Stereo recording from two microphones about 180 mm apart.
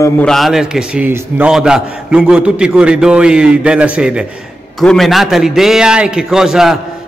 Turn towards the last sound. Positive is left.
turn(degrees=-5)  # may be behind; listen again after turning